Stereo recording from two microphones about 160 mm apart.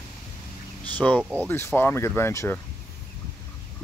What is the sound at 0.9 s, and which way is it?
Speech, 10° left (ahead or behind).